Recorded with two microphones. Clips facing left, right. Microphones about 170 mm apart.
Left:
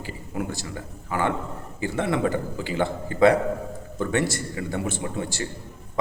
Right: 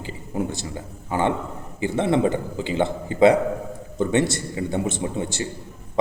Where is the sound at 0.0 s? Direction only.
25° right (ahead or behind).